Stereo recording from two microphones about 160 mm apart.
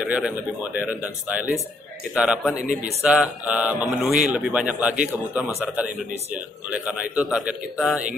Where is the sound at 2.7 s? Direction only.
50° right (ahead or behind).